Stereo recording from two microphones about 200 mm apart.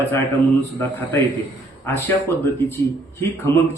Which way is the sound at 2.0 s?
10° left (ahead or behind).